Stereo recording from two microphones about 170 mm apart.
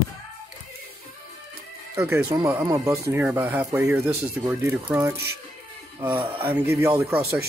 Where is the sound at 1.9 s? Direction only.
15° right (ahead or behind).